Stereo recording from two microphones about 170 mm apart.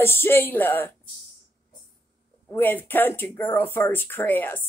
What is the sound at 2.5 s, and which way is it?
Speech, 10° left (ahead or behind).